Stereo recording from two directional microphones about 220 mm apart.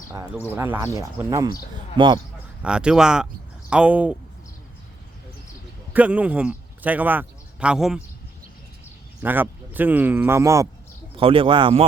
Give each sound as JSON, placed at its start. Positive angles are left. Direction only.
{"t": 0.1, "sound": "speech", "side_deg": -15}
{"t": 2.6, "sound": "speech", "side_deg": -5}
{"t": 5.9, "sound": "a man's voice", "side_deg": -5}
{"t": 9.2, "sound": "speech", "side_deg": -10}
{"t": 11.2, "sound": "speech", "side_deg": -25}